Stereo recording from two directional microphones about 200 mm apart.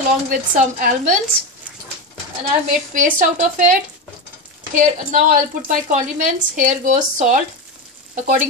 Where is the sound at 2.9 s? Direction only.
40° right (ahead or behind).